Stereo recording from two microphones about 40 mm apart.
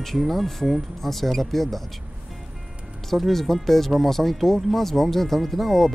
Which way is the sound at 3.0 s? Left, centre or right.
Centre.